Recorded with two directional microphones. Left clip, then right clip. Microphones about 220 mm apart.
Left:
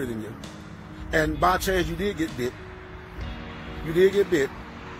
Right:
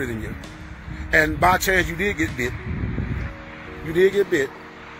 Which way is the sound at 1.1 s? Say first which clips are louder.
Right 5 dB; 5° right (ahead or behind).